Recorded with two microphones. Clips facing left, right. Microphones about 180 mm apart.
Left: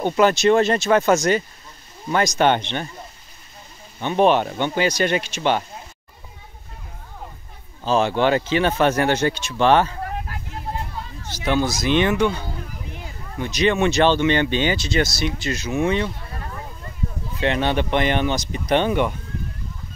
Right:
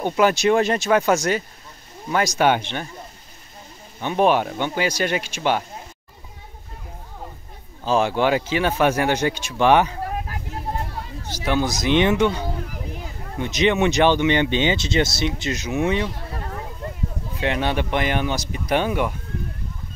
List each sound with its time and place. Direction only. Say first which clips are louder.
0.0 s speech: left 2 dB; 10° right (ahead or behind)
4.0 s speech: left 1 dB; 10° right (ahead or behind)
7.8 s speech: left 1 dB; 10° right (ahead or behind)
11.2 s speech: left 1 dB; 10° right (ahead or behind)
17.4 s speech: left 2 dB; 10° right (ahead or behind)